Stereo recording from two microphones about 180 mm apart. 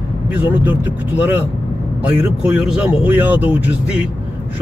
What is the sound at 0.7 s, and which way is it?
Speech, 10° right (ahead or behind).